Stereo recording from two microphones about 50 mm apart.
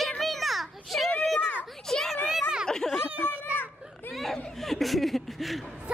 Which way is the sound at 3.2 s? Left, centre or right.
Left.